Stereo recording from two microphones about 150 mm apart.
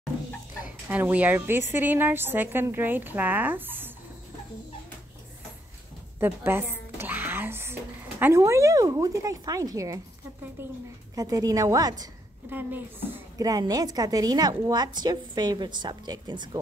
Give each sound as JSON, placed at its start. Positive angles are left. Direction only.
{"t": 0.8, "sound": "a woman's voice", "side_deg": -10}
{"t": 6.1, "sound": "music", "side_deg": -15}
{"t": 8.2, "sound": "a woman's voice", "side_deg": -20}
{"t": 12.4, "sound": "a woman's voice", "side_deg": -15}
{"t": 13.4, "sound": "a woman's voice", "side_deg": -25}